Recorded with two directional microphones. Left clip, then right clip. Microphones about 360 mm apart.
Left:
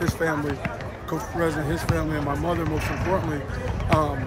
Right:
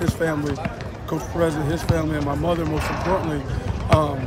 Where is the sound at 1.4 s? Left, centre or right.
Centre.